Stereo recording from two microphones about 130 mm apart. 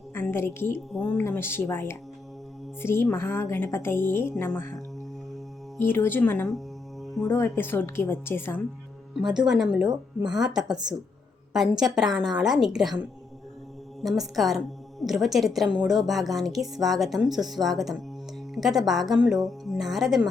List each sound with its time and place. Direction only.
0.1 s a woman's voice: 15° left (ahead or behind)
5.8 s a woman's voice: 15° left (ahead or behind)
7.0 s music: centre (ahead or behind)
7.3 s a woman's voice: 20° left (ahead or behind)
9.5 s a woman's voice: 5° right (ahead or behind)
11.8 s a woman's voice: 5° right (ahead or behind)
14.0 s a woman's voice: centre (ahead or behind)